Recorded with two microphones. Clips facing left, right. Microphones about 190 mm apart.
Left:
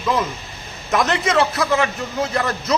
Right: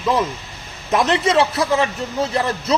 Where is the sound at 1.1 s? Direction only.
30° right (ahead or behind).